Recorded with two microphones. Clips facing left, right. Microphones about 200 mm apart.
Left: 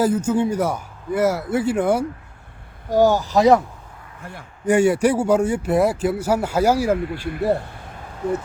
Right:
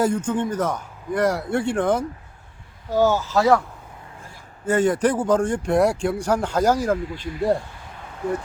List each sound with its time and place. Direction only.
0.0 s speech: 5° left (ahead or behind)
4.2 s a man's voice: 65° left (ahead or behind)
4.6 s speech: 10° left (ahead or behind)
6.9 s speech: 60° left (ahead or behind)